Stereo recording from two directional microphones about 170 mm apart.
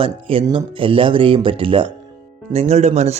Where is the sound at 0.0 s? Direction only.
30° right (ahead or behind).